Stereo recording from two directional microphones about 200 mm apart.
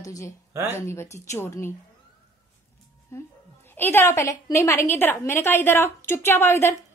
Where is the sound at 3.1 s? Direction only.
10° left (ahead or behind).